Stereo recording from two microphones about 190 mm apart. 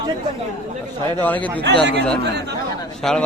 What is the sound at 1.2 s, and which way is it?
Speech, 10° left (ahead or behind).